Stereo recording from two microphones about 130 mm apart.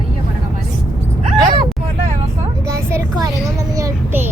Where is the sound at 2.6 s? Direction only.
20° right (ahead or behind).